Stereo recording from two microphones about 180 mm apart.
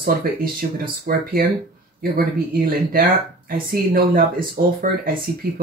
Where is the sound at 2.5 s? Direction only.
55° right (ahead or behind).